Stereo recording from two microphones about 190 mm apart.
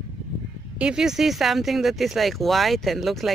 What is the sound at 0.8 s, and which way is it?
Speech, 5° right (ahead or behind).